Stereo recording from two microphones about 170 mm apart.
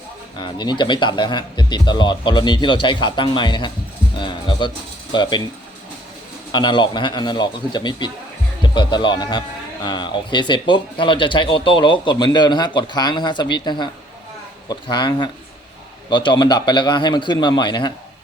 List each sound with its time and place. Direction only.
0.3 s speech: 25° left (ahead or behind)
6.5 s speech: 25° left (ahead or behind)